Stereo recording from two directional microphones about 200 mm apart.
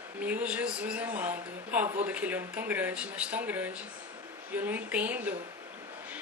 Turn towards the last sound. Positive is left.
turn(degrees=-10)  # may be behind; listen again after turning